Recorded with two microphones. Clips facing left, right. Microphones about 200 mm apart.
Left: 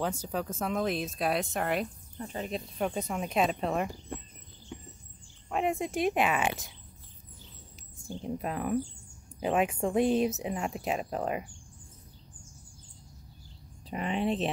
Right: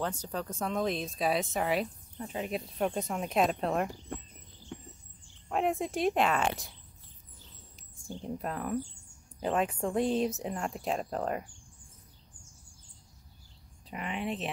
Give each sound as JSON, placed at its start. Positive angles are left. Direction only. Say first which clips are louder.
{"t": 0.0, "sound": "speech", "louder": "left 2 dB", "side_deg": 10}
{"t": 4.7, "sound": "a sound", "louder": "even", "side_deg": 0}
{"t": 5.5, "sound": "speech", "louder": "even", "side_deg": 0}
{"t": 8.2, "sound": "speech", "louder": "left 2 dB", "side_deg": 10}
{"t": 13.8, "sound": "speech", "louder": "left 5 dB", "side_deg": 30}